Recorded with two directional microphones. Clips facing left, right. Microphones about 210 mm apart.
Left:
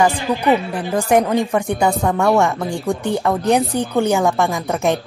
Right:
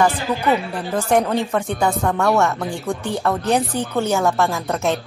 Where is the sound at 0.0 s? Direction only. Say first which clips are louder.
Left 2 dB; 15° left (ahead or behind).